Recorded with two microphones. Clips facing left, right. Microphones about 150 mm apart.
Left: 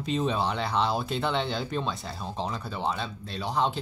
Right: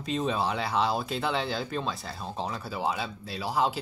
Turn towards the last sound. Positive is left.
turn(degrees=-5)  # may be behind; listen again after turning